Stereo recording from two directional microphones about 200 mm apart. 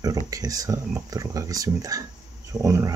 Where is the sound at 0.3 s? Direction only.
15° right (ahead or behind).